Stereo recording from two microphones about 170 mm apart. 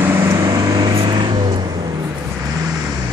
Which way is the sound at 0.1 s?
15° right (ahead or behind).